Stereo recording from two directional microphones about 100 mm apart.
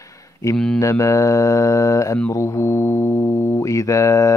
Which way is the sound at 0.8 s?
30° left (ahead or behind).